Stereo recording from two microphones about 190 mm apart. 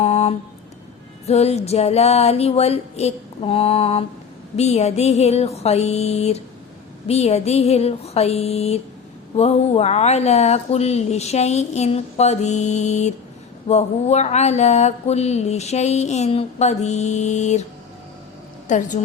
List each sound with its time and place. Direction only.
0.0 s a sound: 30° left (ahead or behind)
1.3 s mantra: 35° left (ahead or behind)
18.7 s mantra: 40° left (ahead or behind)